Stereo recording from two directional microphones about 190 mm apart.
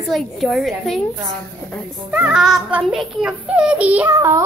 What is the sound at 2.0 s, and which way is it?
A child's voice, 5° right (ahead or behind).